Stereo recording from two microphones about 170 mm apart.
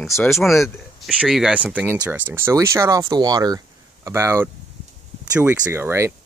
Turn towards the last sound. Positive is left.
turn(degrees=-15)  # may be behind; listen again after turning